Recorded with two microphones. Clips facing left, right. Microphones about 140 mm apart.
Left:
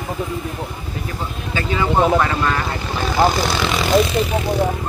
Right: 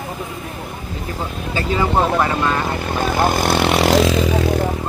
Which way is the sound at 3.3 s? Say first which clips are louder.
Right 3 dB; 55° right (ahead or behind).